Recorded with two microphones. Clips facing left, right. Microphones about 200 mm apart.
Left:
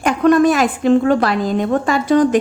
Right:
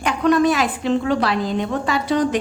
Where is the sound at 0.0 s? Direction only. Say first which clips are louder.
Left 4 dB; 50° left (ahead or behind).